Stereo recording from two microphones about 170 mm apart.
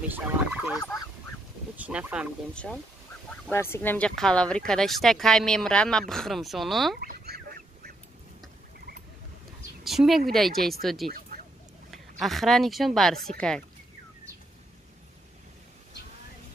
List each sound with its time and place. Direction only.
0.1 s fowl: 10° right (ahead or behind)
1.8 s speech: 10° right (ahead or behind)
2.5 s speech: 5° left (ahead or behind)
7.0 s goose: 60° right (ahead or behind)
9.8 s speech: centre (ahead or behind)